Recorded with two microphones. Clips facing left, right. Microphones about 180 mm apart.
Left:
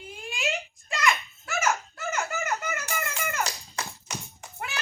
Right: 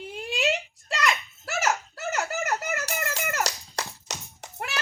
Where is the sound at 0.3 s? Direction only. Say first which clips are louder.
Right 4 dB; 70° right (ahead or behind).